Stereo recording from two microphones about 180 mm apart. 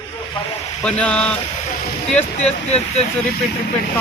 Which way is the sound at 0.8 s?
5° left (ahead or behind).